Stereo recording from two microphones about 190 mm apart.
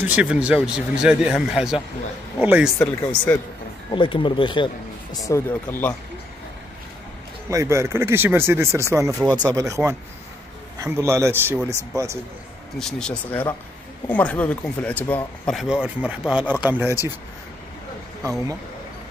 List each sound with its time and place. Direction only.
0.0 s speech: 10° right (ahead or behind)
2.8 s speech: 10° left (ahead or behind)
3.9 s speech: 25° left (ahead or behind); by 5.9 s 10° left (ahead or behind)
7.4 s speech: 15° right (ahead or behind)
9.2 s speech: 10° left (ahead or behind)
9.6 s speech: 15° right (ahead or behind)
12.7 s speech: 5° left (ahead or behind); by 17.0 s 10° right (ahead or behind)